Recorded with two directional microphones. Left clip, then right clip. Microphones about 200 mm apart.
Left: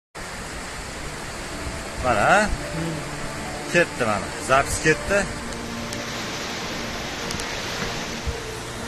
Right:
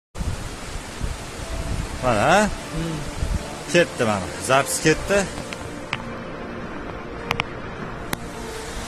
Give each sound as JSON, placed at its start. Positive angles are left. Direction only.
{"t": 2.0, "sound": "speech", "side_deg": -60}
{"t": 3.7, "sound": "speech", "side_deg": -50}